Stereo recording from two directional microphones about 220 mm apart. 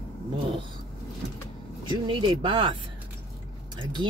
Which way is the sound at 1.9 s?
20° right (ahead or behind).